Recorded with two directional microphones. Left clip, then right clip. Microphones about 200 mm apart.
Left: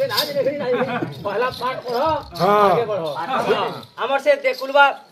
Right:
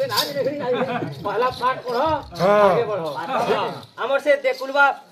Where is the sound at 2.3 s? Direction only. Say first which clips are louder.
Even; 20° left (ahead or behind).